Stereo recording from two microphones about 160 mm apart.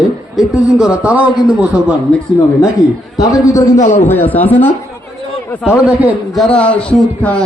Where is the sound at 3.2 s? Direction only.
20° left (ahead or behind).